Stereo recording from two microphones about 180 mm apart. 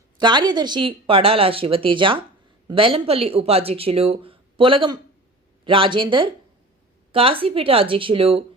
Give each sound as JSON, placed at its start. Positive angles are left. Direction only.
{"t": 0.2, "sound": "speech", "side_deg": -25}